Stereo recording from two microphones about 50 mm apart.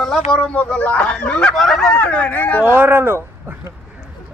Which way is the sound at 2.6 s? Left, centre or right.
Right.